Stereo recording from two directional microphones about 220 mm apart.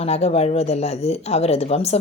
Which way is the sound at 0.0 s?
30° left (ahead or behind).